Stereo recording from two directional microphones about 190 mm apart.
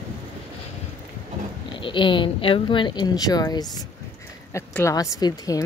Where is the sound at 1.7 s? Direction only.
25° left (ahead or behind).